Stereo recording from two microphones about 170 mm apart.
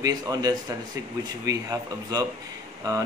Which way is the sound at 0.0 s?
20° right (ahead or behind).